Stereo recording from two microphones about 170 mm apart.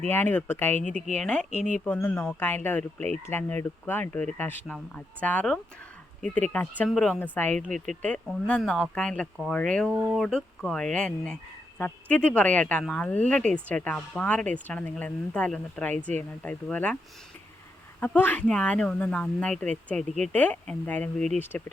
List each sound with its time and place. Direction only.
0.1 s speech: 10° left (ahead or behind)
1.5 s speech: 45° left (ahead or behind)
1.8 s speech: 10° left (ahead or behind)
9.9 s speech: 10° right (ahead or behind)
10.2 s speech: 5° left (ahead or behind)
18.0 s speech: 10° left (ahead or behind)